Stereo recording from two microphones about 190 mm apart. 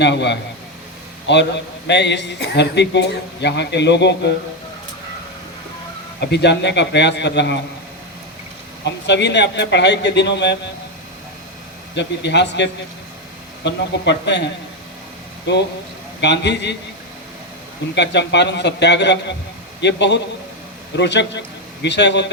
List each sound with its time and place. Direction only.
0.0 s a man's voice: 65° left (ahead or behind)
6.1 s a man's voice: 65° left (ahead or behind)
8.8 s a man's voice: 65° left (ahead or behind)
11.9 s a man's voice: 65° left (ahead or behind)
17.9 s a man's voice: 65° left (ahead or behind)